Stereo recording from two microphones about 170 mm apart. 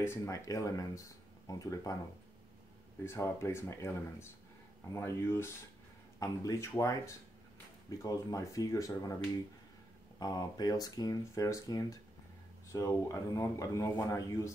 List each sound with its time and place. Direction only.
0.0 s speech: 15° left (ahead or behind)
3.1 s speech: 15° left (ahead or behind)
10.1 s speech: 20° left (ahead or behind)